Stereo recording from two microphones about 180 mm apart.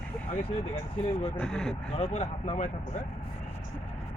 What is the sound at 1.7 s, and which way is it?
Speech, 35° left (ahead or behind).